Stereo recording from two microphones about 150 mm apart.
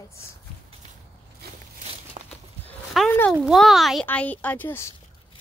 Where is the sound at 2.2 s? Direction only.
40° right (ahead or behind).